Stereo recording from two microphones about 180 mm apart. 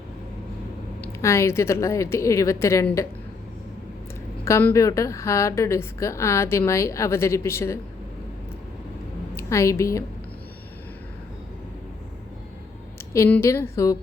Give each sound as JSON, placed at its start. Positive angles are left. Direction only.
{"t": 1.0, "sound": "a woman's voice", "side_deg": 15}
{"t": 4.4, "sound": "a woman's voice", "side_deg": 15}
{"t": 9.3, "sound": "a woman's voice", "side_deg": 15}
{"t": 13.1, "sound": "a woman's voice", "side_deg": 15}